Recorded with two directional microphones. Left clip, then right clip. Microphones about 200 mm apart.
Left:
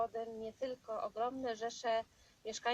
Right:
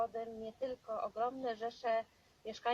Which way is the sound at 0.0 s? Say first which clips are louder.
Even; 10° left (ahead or behind).